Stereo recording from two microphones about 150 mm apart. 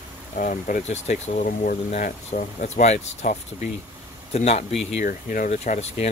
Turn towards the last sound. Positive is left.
turn(degrees=50)  # may be behind; listen again after turning